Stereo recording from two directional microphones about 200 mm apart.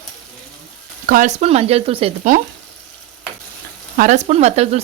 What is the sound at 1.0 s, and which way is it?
Speech, 45° right (ahead or behind).